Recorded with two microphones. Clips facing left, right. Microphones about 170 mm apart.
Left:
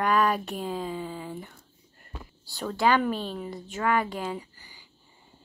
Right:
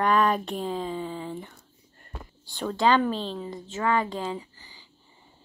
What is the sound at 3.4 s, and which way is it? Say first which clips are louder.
Speech: right 1 dB; 25° right (ahead or behind).